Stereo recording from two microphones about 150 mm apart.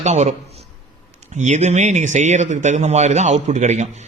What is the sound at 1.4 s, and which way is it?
A man's voice, 50° right (ahead or behind).